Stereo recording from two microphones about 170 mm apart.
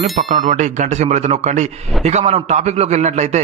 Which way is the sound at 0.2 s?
45° right (ahead or behind).